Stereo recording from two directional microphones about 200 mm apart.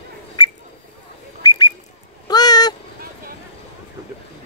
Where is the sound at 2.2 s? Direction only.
20° left (ahead or behind).